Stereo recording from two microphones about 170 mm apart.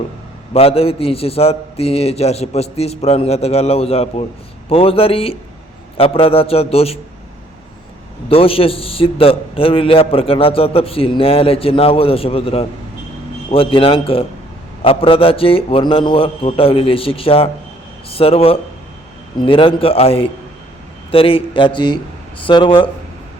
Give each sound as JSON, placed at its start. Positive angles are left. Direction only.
{"t": 0.5, "sound": "a man's voice", "side_deg": 35}
{"t": 8.3, "sound": "a man's voice", "side_deg": 35}